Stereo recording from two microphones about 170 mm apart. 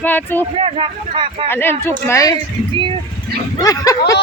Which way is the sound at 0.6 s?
35° right (ahead or behind).